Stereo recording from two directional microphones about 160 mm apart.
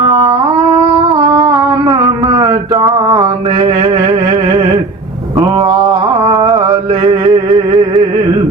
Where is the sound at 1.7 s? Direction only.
30° right (ahead or behind).